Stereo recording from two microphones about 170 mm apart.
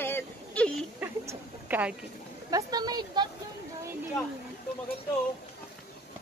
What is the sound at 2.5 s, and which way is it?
Speech, 25° right (ahead or behind).